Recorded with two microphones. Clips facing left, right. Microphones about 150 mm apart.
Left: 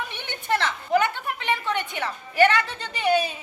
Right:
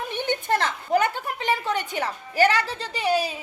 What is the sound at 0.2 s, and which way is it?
A woman's voice, 40° right (ahead or behind).